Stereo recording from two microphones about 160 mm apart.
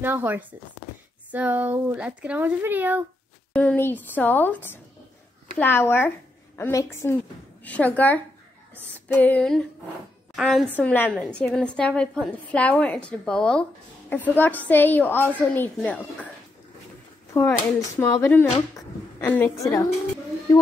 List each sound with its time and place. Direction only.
0.0 s speech: 15° right (ahead or behind)
3.5 s a woman's voice: 10° left (ahead or behind)
10.7 s a woman's voice: 10° left (ahead or behind)
17.3 s a woman's voice: 20° left (ahead or behind)